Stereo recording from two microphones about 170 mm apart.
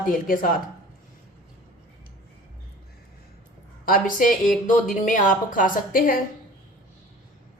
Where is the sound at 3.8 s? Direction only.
55° left (ahead or behind).